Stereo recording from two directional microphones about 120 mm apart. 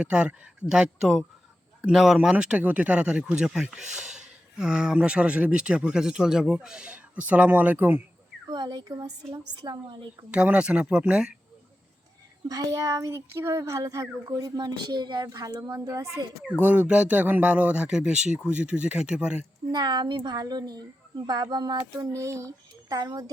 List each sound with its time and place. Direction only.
0.0 s speech: 10° right (ahead or behind)
8.4 s speech: 35° right (ahead or behind)
10.3 s speech: 10° right (ahead or behind)
12.5 s speech: 30° right (ahead or behind)
16.6 s speech: 15° right (ahead or behind)
19.7 s speech: 40° right (ahead or behind)